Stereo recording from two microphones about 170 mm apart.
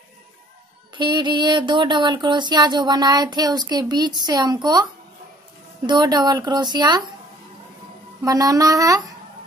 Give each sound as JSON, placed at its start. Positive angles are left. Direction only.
{"t": 0.9, "sound": "music", "side_deg": -25}
{"t": 5.9, "sound": "music", "side_deg": -25}
{"t": 8.2, "sound": "music", "side_deg": -20}